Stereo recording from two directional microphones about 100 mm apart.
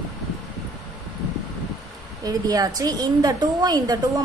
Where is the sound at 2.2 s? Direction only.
40° right (ahead or behind).